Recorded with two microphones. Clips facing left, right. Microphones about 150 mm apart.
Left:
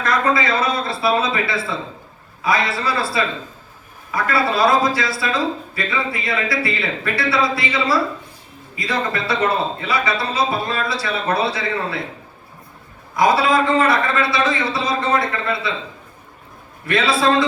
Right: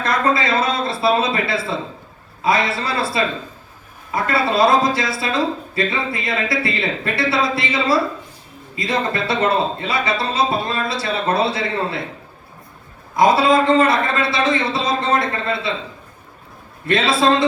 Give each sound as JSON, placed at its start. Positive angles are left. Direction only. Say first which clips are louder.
{"t": 0.0, "sound": "a man's voice", "louder": "even", "side_deg": -25}
{"t": 13.1, "sound": "a man's voice", "louder": "right 2 dB", "side_deg": -25}
{"t": 16.8, "sound": "a man's voice", "louder": "right 1 dB", "side_deg": -25}